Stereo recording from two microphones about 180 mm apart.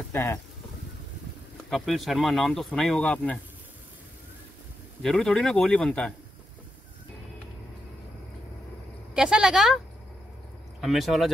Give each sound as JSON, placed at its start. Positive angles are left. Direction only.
{"t": 0.1, "sound": "speech", "side_deg": 15}
{"t": 1.7, "sound": "speech", "side_deg": 0}
{"t": 5.0, "sound": "speech", "side_deg": 5}
{"t": 9.1, "sound": "speech", "side_deg": -5}
{"t": 10.8, "sound": "speech", "side_deg": 0}